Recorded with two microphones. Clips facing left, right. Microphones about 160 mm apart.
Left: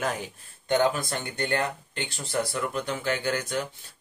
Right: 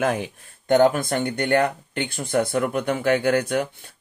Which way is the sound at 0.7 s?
55° right (ahead or behind).